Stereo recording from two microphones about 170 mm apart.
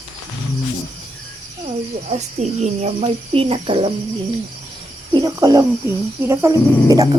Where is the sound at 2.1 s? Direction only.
40° right (ahead or behind).